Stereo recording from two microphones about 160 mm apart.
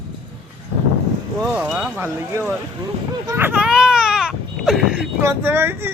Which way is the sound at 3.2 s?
15° right (ahead or behind).